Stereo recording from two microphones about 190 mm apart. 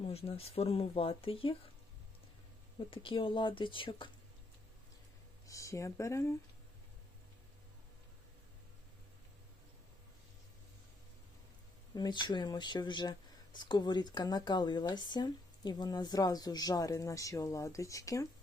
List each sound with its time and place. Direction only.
0.0 s speech: 30° left (ahead or behind)
2.7 s speech: 25° left (ahead or behind)
5.5 s speech: 15° left (ahead or behind)
11.9 s speech: 20° left (ahead or behind)